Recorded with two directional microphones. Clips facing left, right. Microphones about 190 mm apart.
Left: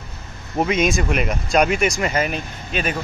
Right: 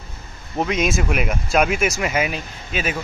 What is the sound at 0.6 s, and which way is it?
Speech, centre (ahead or behind).